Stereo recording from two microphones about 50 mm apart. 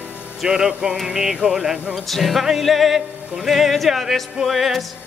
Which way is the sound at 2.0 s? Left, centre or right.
Centre.